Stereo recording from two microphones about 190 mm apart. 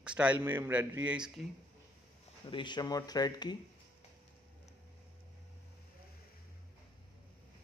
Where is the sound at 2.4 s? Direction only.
25° left (ahead or behind).